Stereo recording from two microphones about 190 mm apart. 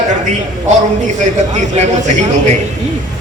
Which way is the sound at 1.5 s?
40° right (ahead or behind).